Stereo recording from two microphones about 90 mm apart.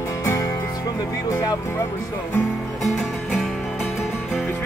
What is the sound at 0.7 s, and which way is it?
Music, 45° left (ahead or behind).